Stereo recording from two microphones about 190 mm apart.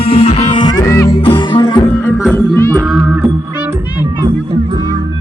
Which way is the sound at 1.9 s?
10° left (ahead or behind).